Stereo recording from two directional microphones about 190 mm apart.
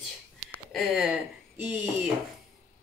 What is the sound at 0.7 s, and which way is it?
Speech, 5° right (ahead or behind).